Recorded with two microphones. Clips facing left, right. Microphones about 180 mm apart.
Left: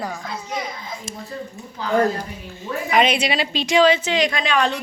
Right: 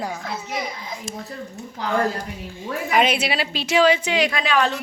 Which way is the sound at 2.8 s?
5° right (ahead or behind).